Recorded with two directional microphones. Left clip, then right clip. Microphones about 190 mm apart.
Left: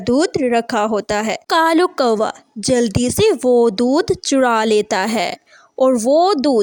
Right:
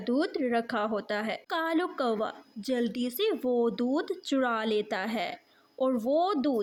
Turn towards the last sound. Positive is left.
turn(degrees=45)  # may be behind; listen again after turning